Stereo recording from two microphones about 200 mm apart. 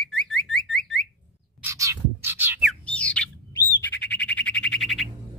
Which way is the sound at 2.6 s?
5° left (ahead or behind).